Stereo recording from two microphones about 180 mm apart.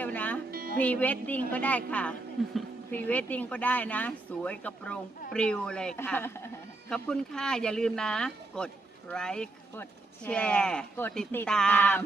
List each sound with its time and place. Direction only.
0.0 s music: 10° left (ahead or behind)
0.5 s music: 55° right (ahead or behind)
0.8 s speech: 10° left (ahead or behind)